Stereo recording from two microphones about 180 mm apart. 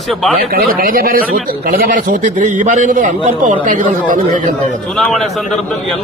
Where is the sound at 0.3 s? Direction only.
55° right (ahead or behind).